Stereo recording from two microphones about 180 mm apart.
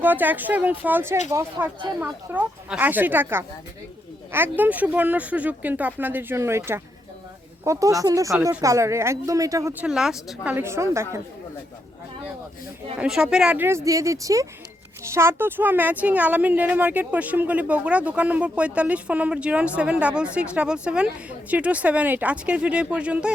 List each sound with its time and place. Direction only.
0.0 s a woman's voice: 10° right (ahead or behind)
13.0 s a woman's voice: 5° right (ahead or behind)